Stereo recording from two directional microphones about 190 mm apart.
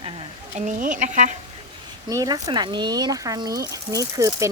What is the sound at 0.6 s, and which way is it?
Speech, 40° right (ahead or behind).